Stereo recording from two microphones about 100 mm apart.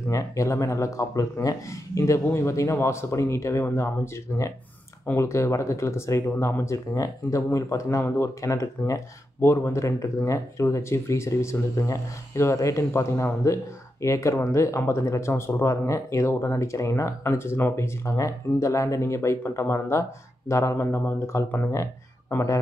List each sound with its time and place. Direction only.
0.1 s speech: 30° left (ahead or behind)